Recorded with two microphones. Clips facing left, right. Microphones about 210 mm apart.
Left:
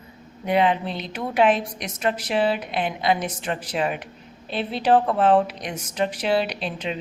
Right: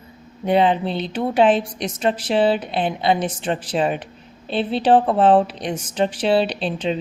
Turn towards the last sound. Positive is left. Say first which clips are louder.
# right 6 dB
turn(degrees=-30)  # may be behind; listen again after turning